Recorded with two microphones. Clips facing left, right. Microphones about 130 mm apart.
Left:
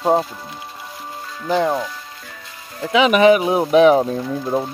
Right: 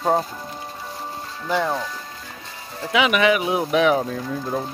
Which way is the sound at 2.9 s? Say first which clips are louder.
Left 6 dB; 35° left (ahead or behind).